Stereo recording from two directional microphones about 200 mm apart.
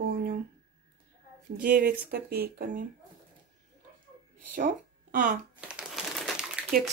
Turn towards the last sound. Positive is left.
turn(degrees=-5)  # may be behind; listen again after turning